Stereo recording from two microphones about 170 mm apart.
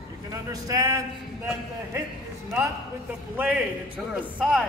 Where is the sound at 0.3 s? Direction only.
20° right (ahead or behind).